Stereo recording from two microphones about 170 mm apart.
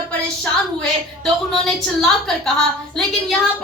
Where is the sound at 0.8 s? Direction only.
Centre (ahead or behind).